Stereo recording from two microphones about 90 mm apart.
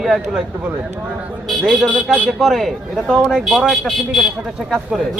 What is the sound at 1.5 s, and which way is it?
Speech, centre (ahead or behind).